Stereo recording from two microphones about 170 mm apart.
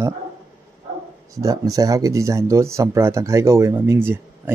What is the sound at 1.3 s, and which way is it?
Speech, 20° right (ahead or behind).